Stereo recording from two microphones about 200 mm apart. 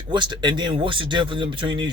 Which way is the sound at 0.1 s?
25° right (ahead or behind).